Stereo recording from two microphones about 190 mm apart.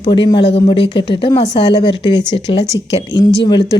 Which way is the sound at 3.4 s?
25° left (ahead or behind).